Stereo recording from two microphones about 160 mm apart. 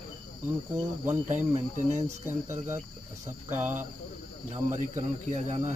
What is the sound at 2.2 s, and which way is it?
Speech, 15° right (ahead or behind).